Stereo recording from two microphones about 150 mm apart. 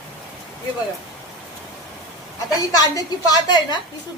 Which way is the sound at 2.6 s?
25° left (ahead or behind).